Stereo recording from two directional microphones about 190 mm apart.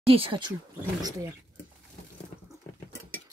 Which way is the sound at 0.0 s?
30° right (ahead or behind).